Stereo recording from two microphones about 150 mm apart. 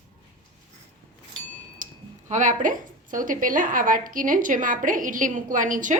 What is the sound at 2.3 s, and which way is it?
A woman's voice, 55° right (ahead or behind).